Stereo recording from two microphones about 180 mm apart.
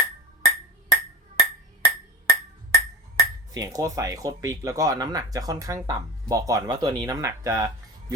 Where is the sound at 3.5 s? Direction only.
20° right (ahead or behind).